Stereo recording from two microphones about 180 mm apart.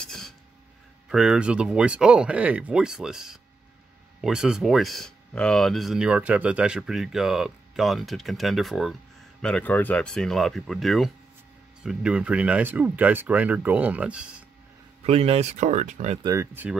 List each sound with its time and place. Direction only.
0.0 s a sound: centre (ahead or behind)
1.0 s speech: 5° right (ahead or behind)
15.0 s speech: 35° right (ahead or behind)
16.2 s speech: 20° right (ahead or behind)